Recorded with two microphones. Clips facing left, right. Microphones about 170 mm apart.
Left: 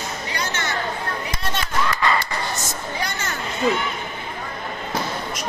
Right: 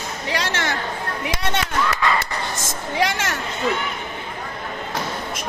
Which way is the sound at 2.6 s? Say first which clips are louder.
Right 5 dB; 90° right.